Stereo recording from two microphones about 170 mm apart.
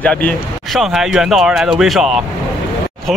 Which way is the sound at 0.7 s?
5° right (ahead or behind).